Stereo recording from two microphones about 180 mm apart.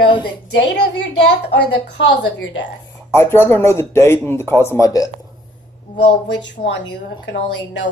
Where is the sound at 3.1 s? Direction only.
15° left (ahead or behind).